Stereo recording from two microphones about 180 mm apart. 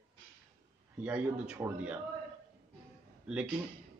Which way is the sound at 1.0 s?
5° right (ahead or behind).